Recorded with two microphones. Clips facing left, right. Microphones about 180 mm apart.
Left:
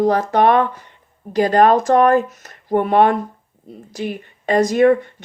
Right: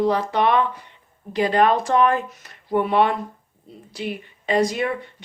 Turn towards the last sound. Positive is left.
turn(degrees=45)  # may be behind; listen again after turning